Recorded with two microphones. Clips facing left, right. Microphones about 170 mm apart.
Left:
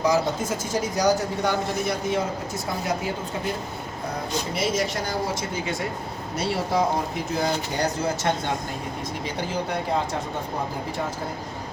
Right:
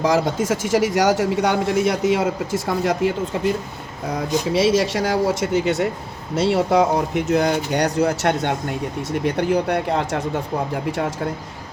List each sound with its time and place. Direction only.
0.0 s speech: 90° right
4.5 s speech: 90° right; by 10.2 s 70° right (ahead or behind)